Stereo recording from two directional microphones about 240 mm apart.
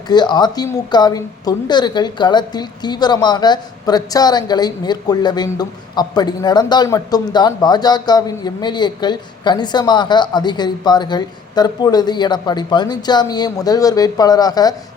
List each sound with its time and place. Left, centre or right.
0.1 s a woman's voice: centre